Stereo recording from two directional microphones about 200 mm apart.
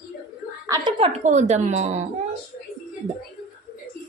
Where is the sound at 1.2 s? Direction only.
35° right (ahead or behind).